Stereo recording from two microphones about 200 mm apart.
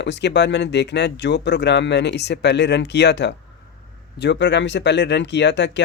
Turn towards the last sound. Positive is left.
turn(degrees=60)  # may be behind; listen again after turning